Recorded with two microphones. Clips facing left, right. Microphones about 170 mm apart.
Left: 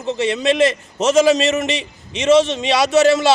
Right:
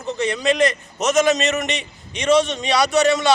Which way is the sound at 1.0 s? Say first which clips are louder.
Left 4 dB; 30° left (ahead or behind).